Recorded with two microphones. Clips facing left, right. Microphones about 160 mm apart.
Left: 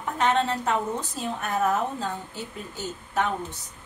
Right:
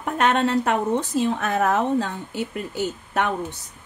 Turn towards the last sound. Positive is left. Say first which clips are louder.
# right 4 dB
turn(degrees=-70)  # may be behind; listen again after turning